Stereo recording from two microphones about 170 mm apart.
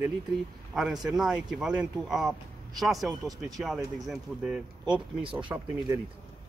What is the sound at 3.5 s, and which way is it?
Speech, centre (ahead or behind).